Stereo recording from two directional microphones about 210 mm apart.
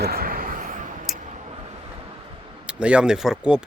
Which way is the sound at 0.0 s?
45° right (ahead or behind).